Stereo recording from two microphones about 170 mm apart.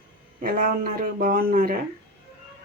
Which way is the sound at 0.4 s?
55° right (ahead or behind).